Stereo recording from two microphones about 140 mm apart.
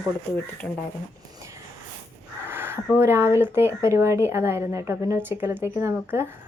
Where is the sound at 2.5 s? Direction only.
15° right (ahead or behind).